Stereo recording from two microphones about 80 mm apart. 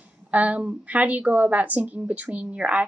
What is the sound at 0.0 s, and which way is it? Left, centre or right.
A woman's voice, centre.